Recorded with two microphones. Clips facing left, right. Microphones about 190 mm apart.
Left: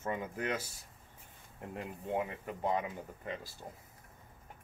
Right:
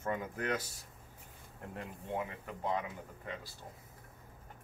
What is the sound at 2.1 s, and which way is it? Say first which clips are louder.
Speech: left 3 dB; 20° left (ahead or behind).